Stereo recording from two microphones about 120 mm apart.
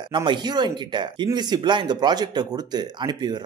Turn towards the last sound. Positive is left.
turn(degrees=-35)  # may be behind; listen again after turning